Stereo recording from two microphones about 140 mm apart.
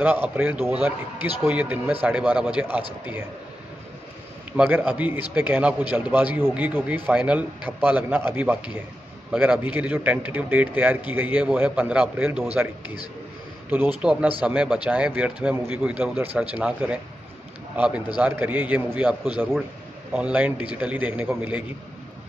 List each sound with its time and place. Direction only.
0.0 s a man's voice: 10° right (ahead or behind)
4.6 s a man's voice: 10° right (ahead or behind)
13.7 s a man's voice: 15° right (ahead or behind)